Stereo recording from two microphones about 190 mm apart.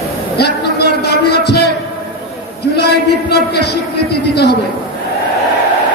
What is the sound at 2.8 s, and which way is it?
A man's voice, 60° left (ahead or behind).